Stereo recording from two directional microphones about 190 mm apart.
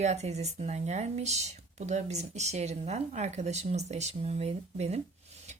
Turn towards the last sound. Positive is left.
turn(degrees=-35)  # may be behind; listen again after turning